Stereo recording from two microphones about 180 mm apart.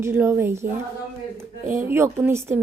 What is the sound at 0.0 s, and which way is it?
A woman's voice, 15° right (ahead or behind).